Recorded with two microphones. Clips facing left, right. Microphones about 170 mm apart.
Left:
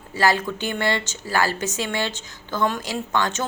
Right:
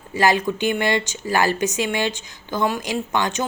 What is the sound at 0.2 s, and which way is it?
A woman's voice, 20° right (ahead or behind).